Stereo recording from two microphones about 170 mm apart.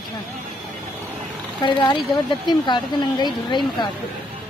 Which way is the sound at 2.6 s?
25° left (ahead or behind).